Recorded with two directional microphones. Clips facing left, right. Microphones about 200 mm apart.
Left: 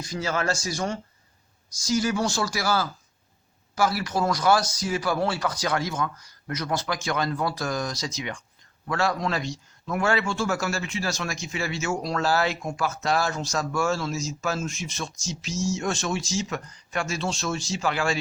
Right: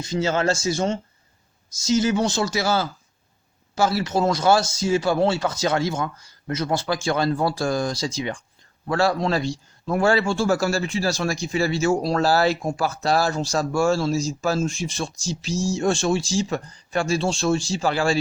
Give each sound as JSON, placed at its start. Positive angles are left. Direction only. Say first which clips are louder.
{"t": 0.0, "sound": "speech", "louder": "right 6 dB", "side_deg": -25}